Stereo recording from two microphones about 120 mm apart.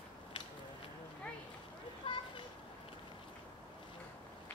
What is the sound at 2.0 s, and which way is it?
Children playing, 50° left (ahead or behind).